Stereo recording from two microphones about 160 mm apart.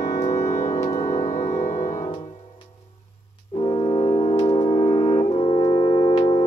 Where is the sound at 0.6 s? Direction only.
20° left (ahead or behind).